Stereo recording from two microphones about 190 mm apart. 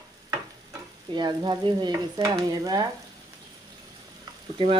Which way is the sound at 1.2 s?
25° right (ahead or behind).